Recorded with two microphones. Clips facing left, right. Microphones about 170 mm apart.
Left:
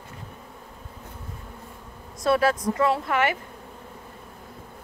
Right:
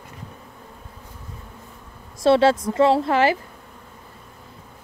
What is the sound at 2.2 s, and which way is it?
Speech, 30° right (ahead or behind).